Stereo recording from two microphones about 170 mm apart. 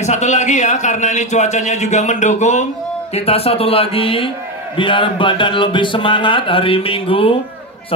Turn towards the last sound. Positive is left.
turn(degrees=35)  # may be behind; listen again after turning